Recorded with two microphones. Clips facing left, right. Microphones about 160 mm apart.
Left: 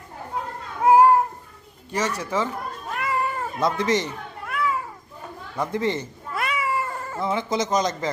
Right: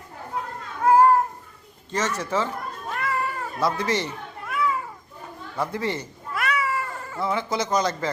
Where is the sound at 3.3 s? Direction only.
20° left (ahead or behind).